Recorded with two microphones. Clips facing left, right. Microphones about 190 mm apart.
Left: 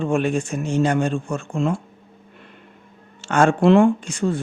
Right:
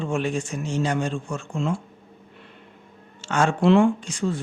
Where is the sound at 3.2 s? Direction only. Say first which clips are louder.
Left 4 dB; 55° left (ahead or behind).